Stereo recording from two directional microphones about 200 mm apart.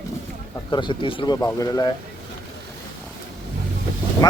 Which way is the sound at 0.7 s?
25° left (ahead or behind).